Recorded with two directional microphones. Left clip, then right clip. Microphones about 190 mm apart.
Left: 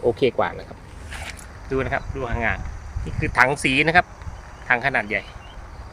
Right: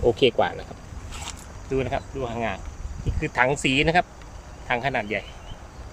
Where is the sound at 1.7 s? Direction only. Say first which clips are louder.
Left 2 dB; 5° right (ahead or behind).